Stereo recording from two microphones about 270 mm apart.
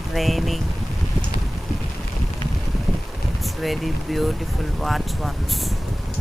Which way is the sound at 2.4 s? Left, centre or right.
Centre.